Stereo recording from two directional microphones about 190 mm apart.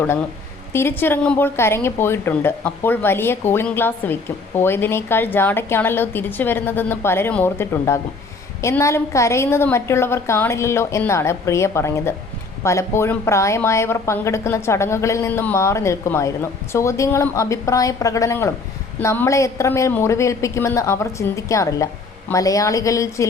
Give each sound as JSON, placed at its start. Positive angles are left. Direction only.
{"t": 0.7, "sound": "speech", "side_deg": 10}